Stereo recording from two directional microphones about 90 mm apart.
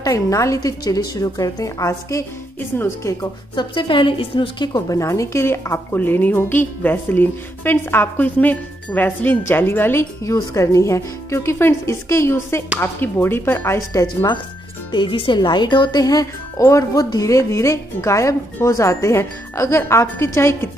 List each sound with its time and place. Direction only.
0.0 s speech: 40° left (ahead or behind)
2.7 s a woman's voice: 25° left (ahead or behind)
3.5 s a woman's voice: 65° left (ahead or behind)
4.8 s a woman's voice: 35° left (ahead or behind)
10.2 s a woman's voice: 35° left (ahead or behind)
13.7 s speech: 40° left (ahead or behind)
14.9 s speech: 65° left (ahead or behind); by 20.7 s 30° left (ahead or behind)